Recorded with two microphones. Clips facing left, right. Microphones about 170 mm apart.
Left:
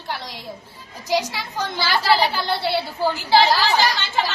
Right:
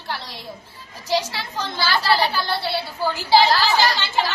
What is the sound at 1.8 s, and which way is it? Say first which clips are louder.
A woman's voice: left 1 dB; 20° left (ahead or behind).